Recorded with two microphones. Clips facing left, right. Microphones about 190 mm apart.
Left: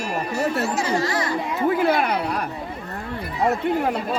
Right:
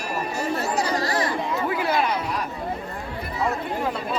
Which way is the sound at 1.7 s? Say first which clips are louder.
Left 5 dB; 55° left (ahead or behind).